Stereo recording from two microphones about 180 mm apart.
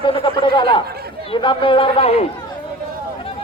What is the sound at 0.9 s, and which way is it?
Chatter, 60° right (ahead or behind).